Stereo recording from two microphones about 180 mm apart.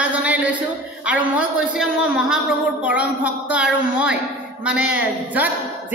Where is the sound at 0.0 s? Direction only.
5° right (ahead or behind).